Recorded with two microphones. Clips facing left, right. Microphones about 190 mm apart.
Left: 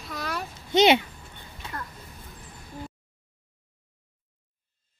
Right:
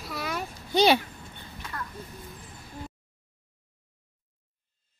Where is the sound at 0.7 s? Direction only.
20° left (ahead or behind).